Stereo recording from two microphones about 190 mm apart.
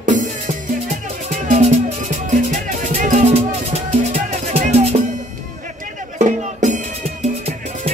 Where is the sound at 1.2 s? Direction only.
40° right (ahead or behind).